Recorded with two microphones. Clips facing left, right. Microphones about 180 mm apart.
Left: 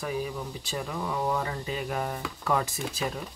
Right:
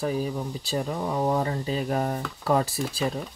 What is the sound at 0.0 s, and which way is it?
Speech, 35° right (ahead or behind).